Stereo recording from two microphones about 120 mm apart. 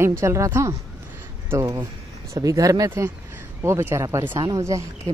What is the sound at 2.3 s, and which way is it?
A woman's voice, 30° right (ahead or behind).